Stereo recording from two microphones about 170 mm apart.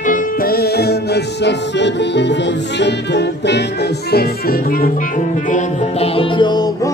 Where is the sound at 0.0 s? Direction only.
55° left (ahead or behind).